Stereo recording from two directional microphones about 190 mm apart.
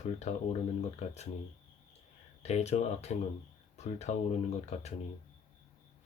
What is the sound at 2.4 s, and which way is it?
Speech, 35° left (ahead or behind).